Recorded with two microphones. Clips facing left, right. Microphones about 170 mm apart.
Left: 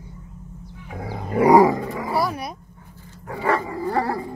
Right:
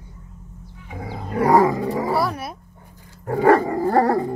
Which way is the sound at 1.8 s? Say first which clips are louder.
Right 6 dB; 35° right (ahead or behind).